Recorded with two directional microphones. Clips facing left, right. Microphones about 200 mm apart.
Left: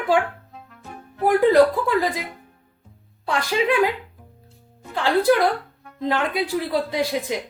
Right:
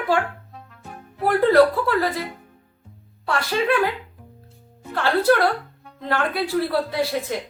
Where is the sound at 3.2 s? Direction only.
15° left (ahead or behind).